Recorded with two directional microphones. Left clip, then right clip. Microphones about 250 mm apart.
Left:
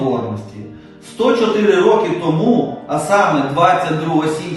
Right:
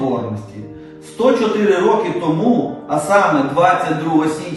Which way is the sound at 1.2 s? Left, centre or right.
Centre.